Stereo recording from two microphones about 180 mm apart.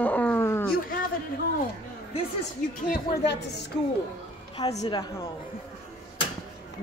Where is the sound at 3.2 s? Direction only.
70° left (ahead or behind).